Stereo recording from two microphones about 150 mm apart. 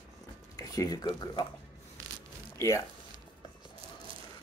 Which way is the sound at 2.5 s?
20° left (ahead or behind).